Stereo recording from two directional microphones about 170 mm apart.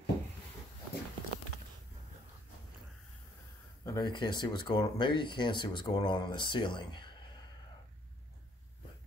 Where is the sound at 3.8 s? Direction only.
25° left (ahead or behind).